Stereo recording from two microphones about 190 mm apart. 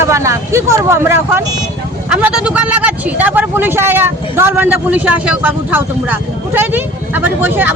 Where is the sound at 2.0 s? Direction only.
5° right (ahead or behind).